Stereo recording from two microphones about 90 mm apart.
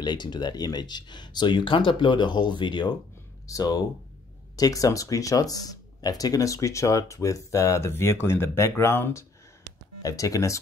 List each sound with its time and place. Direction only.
0.0 s speech: 55° left (ahead or behind)
3.4 s speech: 40° left (ahead or behind); by 9.2 s 25° left (ahead or behind)
10.0 s speech: 40° left (ahead or behind)